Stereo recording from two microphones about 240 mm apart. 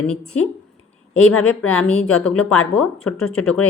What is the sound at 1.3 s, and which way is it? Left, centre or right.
Speech, left.